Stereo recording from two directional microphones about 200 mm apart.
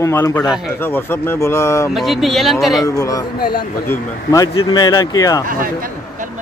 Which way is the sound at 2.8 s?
15° left (ahead or behind).